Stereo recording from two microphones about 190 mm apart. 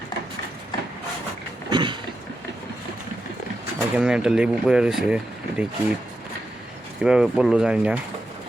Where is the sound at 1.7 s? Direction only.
25° right (ahead or behind).